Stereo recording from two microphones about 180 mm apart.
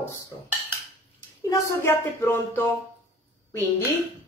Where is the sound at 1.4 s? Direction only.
15° left (ahead or behind).